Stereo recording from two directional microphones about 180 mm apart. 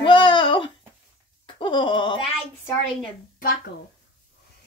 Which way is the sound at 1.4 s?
25° left (ahead or behind).